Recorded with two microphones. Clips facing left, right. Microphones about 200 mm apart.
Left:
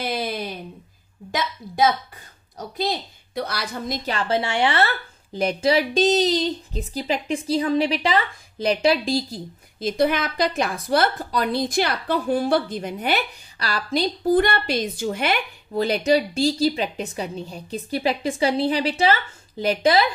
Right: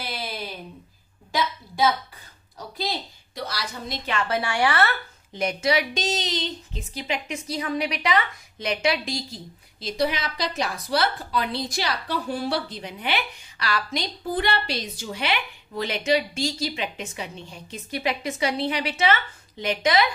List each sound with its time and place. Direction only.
0.0 s a sound: 50° left (ahead or behind)
3.3 s a woman's voice: 55° left (ahead or behind); by 9.4 s 35° left (ahead or behind)
9.8 s a woman's voice: 50° left (ahead or behind); by 20.1 s 35° left (ahead or behind)